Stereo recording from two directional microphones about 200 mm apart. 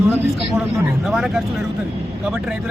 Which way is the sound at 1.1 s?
Centre (ahead or behind).